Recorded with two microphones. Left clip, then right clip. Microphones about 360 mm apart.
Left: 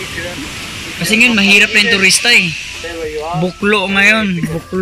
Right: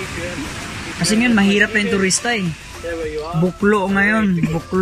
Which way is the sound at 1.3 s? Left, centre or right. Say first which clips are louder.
Left 4 dB; centre.